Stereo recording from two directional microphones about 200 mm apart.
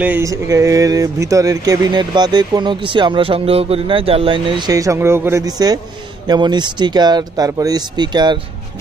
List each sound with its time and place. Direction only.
0.0 s speech: 10° right (ahead or behind)